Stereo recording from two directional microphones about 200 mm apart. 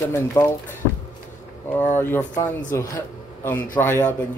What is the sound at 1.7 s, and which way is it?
Speech, 10° left (ahead or behind).